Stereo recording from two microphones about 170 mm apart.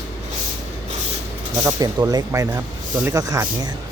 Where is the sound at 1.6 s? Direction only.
20° right (ahead or behind).